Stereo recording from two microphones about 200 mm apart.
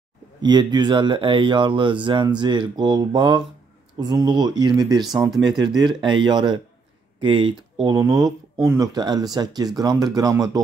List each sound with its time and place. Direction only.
0.4 s speech: 20° right (ahead or behind)